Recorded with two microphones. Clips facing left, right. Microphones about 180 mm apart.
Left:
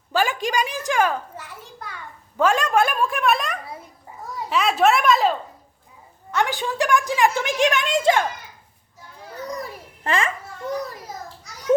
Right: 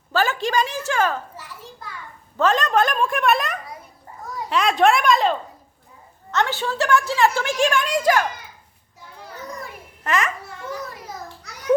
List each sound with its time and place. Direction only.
0.1 s a woman's voice: 10° left (ahead or behind)
2.4 s a woman's voice: 10° left (ahead or behind)
6.3 s a woman's voice: 15° left (ahead or behind)
9.6 s babbling: 35° left (ahead or behind)